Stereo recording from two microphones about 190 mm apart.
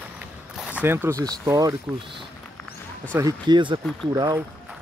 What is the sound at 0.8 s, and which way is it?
Speech, 10° right (ahead or behind).